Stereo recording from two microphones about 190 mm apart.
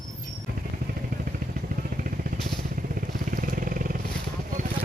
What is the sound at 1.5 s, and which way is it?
Vehicle, 50° right (ahead or behind).